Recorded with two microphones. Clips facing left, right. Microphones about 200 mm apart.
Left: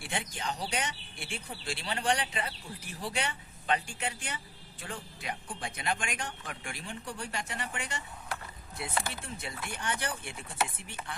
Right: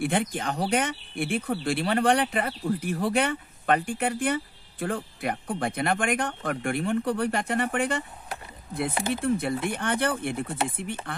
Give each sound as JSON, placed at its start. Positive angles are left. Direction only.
{"t": 0.0, "sound": "speech", "side_deg": -55}
{"t": 9.1, "sound": "speech", "side_deg": -55}